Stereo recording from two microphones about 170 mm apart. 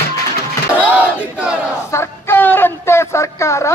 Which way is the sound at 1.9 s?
15° left (ahead or behind).